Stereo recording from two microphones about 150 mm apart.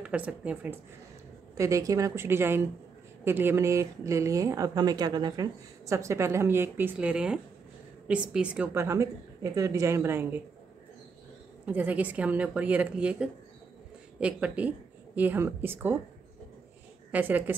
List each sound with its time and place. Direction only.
0.0 s a woman's voice: 10° right (ahead or behind)
1.5 s a woman's voice: 20° right (ahead or behind)
11.6 s a woman's voice: 10° right (ahead or behind)
17.1 s a woman's voice: 10° right (ahead or behind)